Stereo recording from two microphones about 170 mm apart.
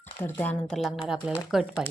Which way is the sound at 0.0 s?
10° left (ahead or behind).